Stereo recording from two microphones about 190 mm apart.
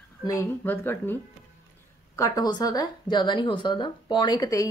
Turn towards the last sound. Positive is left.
turn(degrees=20)  # may be behind; listen again after turning